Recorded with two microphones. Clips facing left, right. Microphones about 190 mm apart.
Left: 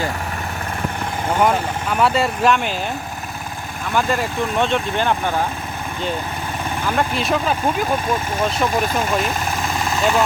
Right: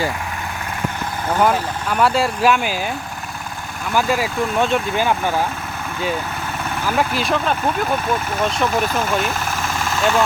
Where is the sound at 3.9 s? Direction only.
5° right (ahead or behind).